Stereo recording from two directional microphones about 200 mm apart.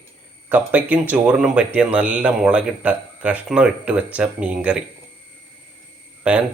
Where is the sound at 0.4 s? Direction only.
5° right (ahead or behind).